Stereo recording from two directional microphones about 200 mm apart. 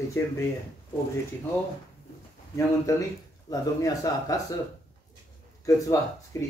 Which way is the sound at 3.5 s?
20° left (ahead or behind).